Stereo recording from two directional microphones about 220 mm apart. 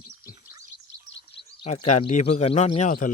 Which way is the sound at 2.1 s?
30° left (ahead or behind).